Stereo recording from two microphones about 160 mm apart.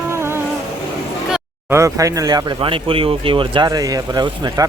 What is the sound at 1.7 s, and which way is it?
Speech, 20° right (ahead or behind).